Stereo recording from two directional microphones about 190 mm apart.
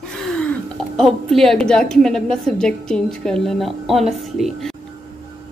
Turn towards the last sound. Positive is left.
turn(degrees=0)  # may be behind; listen again after turning